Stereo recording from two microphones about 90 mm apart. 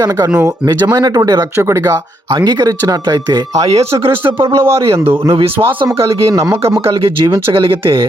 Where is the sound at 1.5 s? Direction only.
30° right (ahead or behind).